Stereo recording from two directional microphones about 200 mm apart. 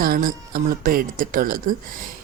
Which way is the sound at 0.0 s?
45° right (ahead or behind).